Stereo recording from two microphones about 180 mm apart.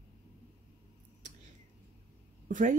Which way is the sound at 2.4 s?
45° right (ahead or behind).